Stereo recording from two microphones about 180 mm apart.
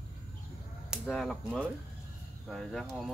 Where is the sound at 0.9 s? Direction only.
Centre (ahead or behind).